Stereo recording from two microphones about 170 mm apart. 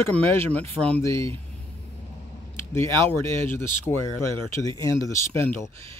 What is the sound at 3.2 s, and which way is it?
Speech, 15° left (ahead or behind).